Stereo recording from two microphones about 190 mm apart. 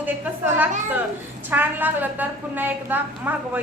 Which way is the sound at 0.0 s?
10° right (ahead or behind).